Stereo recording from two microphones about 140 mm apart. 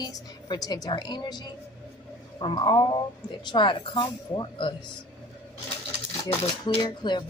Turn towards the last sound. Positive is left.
turn(degrees=35)  # may be behind; listen again after turning